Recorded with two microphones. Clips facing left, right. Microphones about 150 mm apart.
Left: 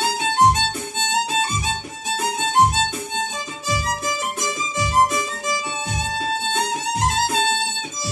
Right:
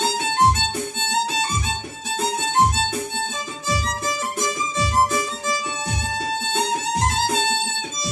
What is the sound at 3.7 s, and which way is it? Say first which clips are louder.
Music: left 1 dB; 20° left (ahead or behind).